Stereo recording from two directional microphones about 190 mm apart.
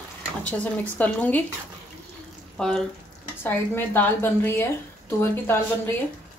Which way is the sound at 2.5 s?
Centre (ahead or behind).